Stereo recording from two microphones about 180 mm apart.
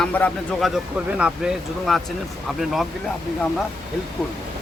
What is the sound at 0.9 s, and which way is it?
Speech, 5° right (ahead or behind).